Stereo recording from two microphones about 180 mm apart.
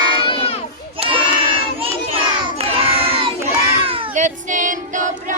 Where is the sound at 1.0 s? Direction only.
30° right (ahead or behind).